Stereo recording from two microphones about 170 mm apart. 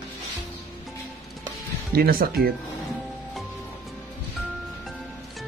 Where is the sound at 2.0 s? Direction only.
60° right (ahead or behind).